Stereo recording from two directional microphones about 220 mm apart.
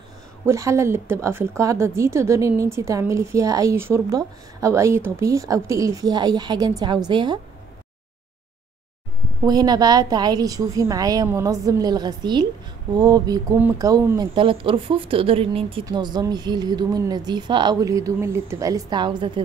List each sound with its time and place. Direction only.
0.5 s speech: 15° right (ahead or behind)
9.4 s speech: 20° right (ahead or behind)